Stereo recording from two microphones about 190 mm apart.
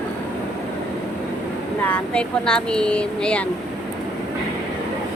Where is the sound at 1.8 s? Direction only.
5° left (ahead or behind).